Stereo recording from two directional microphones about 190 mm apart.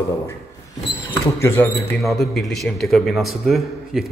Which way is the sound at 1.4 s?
10° left (ahead or behind).